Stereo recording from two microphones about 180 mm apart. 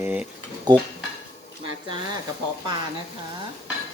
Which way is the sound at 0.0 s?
10° right (ahead or behind).